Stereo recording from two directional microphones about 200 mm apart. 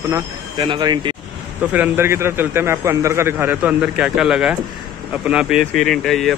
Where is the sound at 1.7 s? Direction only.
10° right (ahead or behind).